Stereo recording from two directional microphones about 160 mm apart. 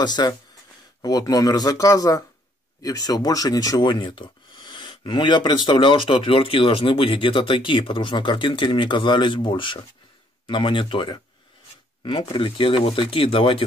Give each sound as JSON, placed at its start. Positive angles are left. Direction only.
{"t": 0.0, "sound": "speech", "side_deg": 25}